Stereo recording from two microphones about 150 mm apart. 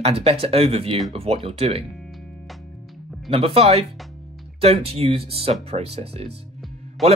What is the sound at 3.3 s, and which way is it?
Speech, 40° right (ahead or behind).